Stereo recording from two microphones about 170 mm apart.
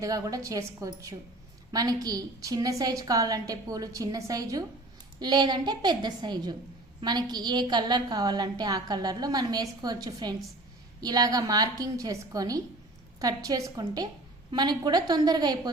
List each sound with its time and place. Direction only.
0.0 s a woman's voice: 20° right (ahead or behind)